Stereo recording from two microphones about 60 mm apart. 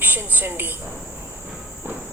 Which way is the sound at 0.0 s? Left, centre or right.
Right.